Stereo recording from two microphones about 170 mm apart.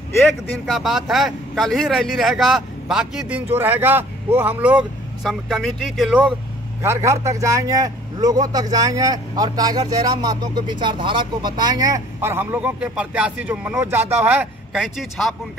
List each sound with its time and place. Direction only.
0.7 s a man's voice: centre (ahead or behind)
6.8 s a man's voice: 15° right (ahead or behind); by 15.3 s centre (ahead or behind)